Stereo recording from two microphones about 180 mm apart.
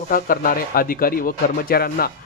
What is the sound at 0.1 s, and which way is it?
Speech, 50° left (ahead or behind).